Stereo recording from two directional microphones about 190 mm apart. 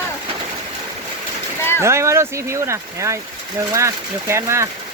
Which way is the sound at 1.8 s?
15° right (ahead or behind).